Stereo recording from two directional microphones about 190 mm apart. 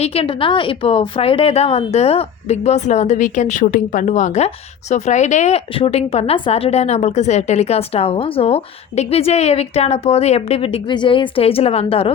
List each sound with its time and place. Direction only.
0.0 s a woman's voice: 30° left (ahead or behind)